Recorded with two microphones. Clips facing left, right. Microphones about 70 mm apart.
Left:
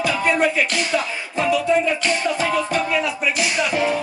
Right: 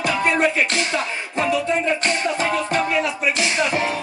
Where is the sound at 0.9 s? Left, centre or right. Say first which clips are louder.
Left 1 dB; right.